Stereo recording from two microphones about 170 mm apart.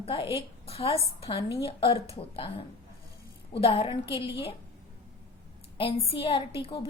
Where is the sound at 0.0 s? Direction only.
30° left (ahead or behind).